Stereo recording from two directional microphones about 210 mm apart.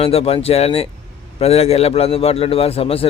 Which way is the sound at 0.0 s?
30° left (ahead or behind).